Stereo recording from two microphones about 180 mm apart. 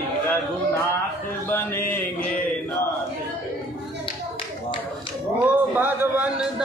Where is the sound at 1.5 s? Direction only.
10° left (ahead or behind).